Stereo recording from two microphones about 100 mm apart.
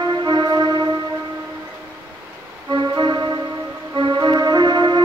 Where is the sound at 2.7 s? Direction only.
45° right (ahead or behind).